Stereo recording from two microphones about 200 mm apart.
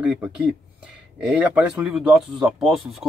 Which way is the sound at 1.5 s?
5° right (ahead or behind).